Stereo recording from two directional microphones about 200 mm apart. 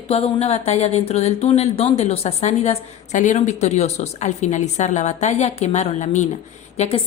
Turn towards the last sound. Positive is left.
turn(degrees=30)  # may be behind; listen again after turning